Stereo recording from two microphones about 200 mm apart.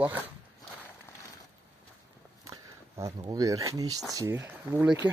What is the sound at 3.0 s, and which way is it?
Speech, 15° right (ahead or behind).